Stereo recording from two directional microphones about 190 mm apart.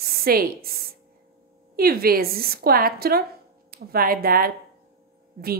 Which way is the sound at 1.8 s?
50° right (ahead or behind).